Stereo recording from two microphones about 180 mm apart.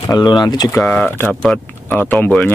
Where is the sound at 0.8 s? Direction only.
Centre (ahead or behind).